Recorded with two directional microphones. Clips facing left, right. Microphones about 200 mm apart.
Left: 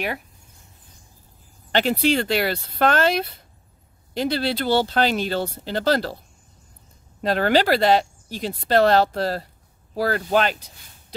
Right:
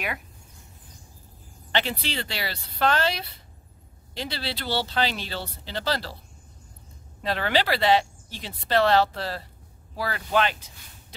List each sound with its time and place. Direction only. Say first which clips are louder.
1.7 s speech: left 9 dB; 45° left (ahead or behind)
7.2 s speech: left 6 dB; 45° left (ahead or behind)